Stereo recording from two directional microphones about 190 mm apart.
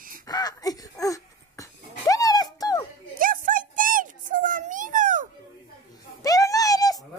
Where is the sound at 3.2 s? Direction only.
45° right (ahead or behind).